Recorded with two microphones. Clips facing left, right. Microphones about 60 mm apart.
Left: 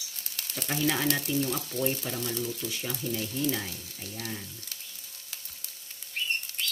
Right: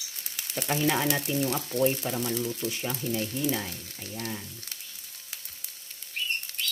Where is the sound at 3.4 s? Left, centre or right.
Centre.